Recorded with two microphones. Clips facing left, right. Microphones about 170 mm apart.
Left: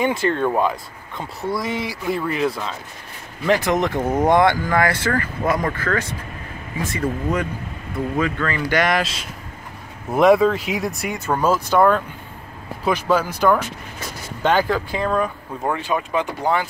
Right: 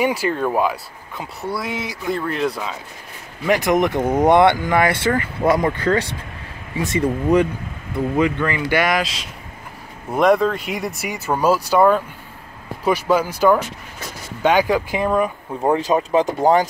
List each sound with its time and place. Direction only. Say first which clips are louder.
0.0 s speech: even; 10° right (ahead or behind)
3.4 s speech: right 2 dB; 15° right (ahead or behind)
8.7 s speech: even; centre (ahead or behind)
15.6 s speech: right 5 dB; 35° right (ahead or behind)